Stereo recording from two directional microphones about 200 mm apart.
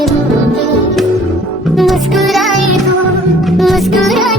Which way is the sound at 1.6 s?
Centre (ahead or behind).